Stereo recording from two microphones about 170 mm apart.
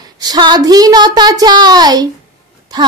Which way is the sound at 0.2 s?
25° right (ahead or behind).